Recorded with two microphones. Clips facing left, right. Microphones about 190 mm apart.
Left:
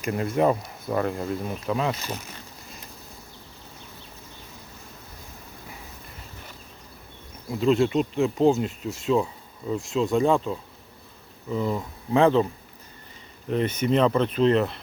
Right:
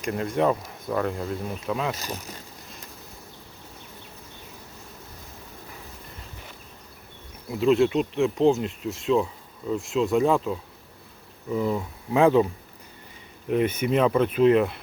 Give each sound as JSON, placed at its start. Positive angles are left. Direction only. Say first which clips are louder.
{"t": 0.0, "sound": "speech", "louder": "left 1 dB", "side_deg": 5}
{"t": 2.0, "sound": "speech", "louder": "even", "side_deg": -40}
{"t": 7.4, "sound": "speech", "louder": "right 1 dB", "side_deg": -5}
{"t": 13.5, "sound": "speech", "louder": "even", "side_deg": -10}